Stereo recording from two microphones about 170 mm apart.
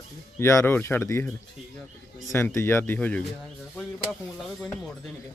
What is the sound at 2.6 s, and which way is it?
Speech, 15° left (ahead or behind).